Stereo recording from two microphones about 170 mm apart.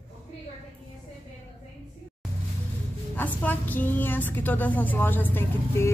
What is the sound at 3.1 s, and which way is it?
A woman's voice, 10° left (ahead or behind).